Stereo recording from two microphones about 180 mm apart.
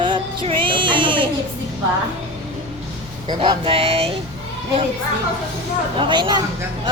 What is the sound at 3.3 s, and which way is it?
Speech, 30° right (ahead or behind).